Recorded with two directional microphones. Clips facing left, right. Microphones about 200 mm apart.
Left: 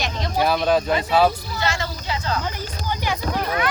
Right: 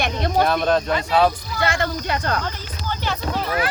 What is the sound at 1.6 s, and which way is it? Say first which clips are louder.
Speech: right 4 dB; 55° right (ahead or behind).